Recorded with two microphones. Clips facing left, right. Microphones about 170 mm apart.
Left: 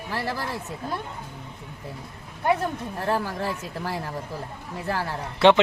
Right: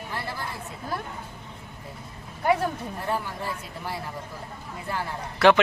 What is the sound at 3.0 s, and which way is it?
Speech, 90° left.